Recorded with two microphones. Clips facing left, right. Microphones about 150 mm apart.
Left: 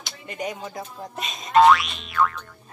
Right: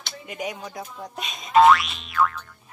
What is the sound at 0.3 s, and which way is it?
Speech, centre (ahead or behind).